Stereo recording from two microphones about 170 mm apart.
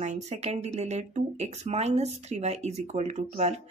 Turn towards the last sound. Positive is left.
turn(degrees=-45)  # may be behind; listen again after turning